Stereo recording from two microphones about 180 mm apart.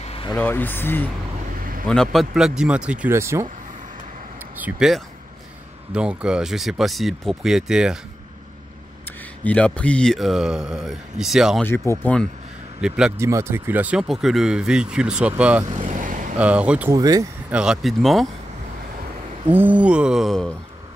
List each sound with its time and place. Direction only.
0.0 s vehicle: 30° left (ahead or behind)
0.3 s speech: 10° left (ahead or behind); by 3.4 s 15° right (ahead or behind)
4.6 s speech: 5° right (ahead or behind)
9.4 s speech: 10° left (ahead or behind)
11.6 s speech: 15° left (ahead or behind)
12.8 s speech: 5° right (ahead or behind)
13.2 s speech: 15° right (ahead or behind)
15.6 s vehicle: 40° right (ahead or behind)
16.3 s speech: 5° right (ahead or behind)
16.9 s speech: 20° right (ahead or behind)
17.5 s speech: 5° right (ahead or behind)
19.5 s speech: 10° right (ahead or behind)